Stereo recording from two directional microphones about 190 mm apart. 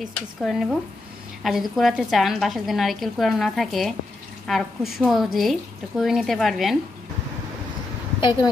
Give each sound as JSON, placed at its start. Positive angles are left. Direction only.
{"t": 0.0, "sound": "a woman's voice", "side_deg": 0}
{"t": 8.2, "sound": "speech", "side_deg": 25}